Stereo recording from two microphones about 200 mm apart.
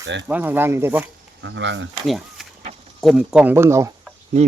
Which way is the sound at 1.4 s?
65° right (ahead or behind).